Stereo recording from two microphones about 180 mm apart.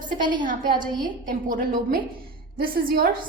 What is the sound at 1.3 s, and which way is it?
A woman's voice, 50° right (ahead or behind).